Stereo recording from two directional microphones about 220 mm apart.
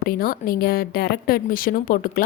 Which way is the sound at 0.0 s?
40° left (ahead or behind).